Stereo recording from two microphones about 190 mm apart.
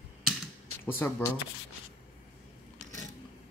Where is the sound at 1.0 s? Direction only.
10° left (ahead or behind).